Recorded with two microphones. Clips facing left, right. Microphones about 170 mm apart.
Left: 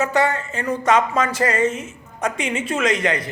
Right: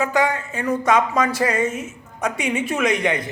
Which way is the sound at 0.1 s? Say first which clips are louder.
Left 1 dB; 10° right (ahead or behind).